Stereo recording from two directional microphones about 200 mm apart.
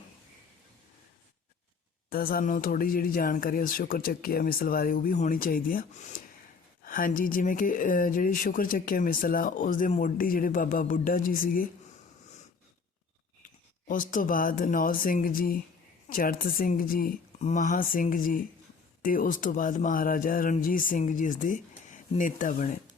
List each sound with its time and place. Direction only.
2.0 s speech: 45° left (ahead or behind)
13.4 s speech: 40° left (ahead or behind)